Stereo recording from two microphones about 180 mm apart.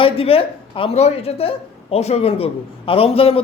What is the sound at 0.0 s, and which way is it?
Speech, 30° left (ahead or behind).